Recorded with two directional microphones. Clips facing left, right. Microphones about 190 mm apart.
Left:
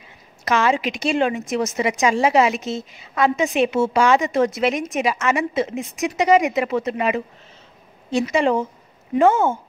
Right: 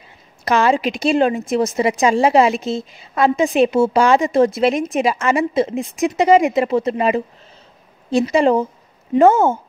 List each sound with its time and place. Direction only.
0.5 s a woman's voice: 35° right (ahead or behind)